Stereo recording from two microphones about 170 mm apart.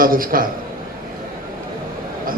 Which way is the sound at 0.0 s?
55° right (ahead or behind).